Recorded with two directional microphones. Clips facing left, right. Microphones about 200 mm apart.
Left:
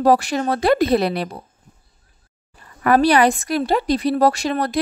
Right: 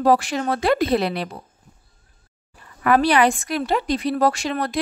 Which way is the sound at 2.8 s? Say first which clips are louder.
Left 2 dB; 40° left (ahead or behind).